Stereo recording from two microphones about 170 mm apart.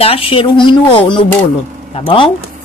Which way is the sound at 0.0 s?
35° left (ahead or behind).